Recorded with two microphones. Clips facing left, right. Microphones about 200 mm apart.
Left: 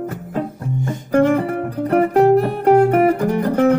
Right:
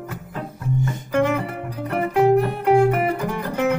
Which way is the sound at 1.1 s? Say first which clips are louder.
Left 6 dB; 45° left (ahead or behind).